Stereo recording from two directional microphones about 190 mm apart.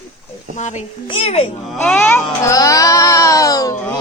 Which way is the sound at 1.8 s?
10° left (ahead or behind).